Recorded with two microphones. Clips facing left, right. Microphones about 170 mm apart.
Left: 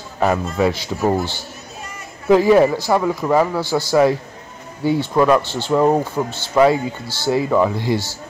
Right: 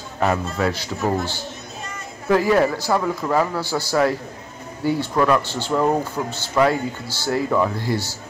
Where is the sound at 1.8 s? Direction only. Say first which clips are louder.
Left 6 dB; 10° left (ahead or behind).